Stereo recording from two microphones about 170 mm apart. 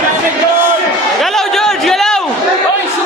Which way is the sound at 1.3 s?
Centre (ahead or behind).